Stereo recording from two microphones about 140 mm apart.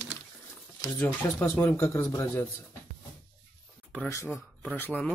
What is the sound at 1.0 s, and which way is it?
Speech, 15° left (ahead or behind).